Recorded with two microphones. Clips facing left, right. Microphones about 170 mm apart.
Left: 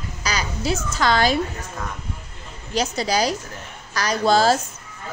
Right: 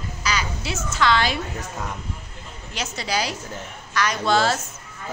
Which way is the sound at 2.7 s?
35° left (ahead or behind).